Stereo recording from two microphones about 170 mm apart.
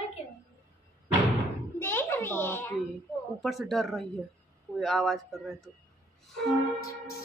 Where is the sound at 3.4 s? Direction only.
Centre (ahead or behind).